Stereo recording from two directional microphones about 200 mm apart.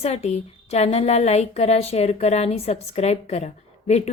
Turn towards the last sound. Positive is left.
turn(degrees=35)  # may be behind; listen again after turning